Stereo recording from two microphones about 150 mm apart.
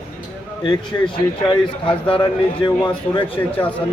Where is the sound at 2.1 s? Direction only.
30° left (ahead or behind).